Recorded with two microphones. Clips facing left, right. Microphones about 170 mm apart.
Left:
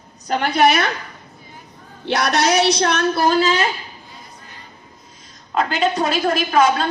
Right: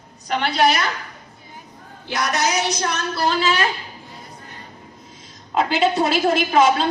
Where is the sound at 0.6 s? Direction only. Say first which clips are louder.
Left 3 dB; 60° left (ahead or behind).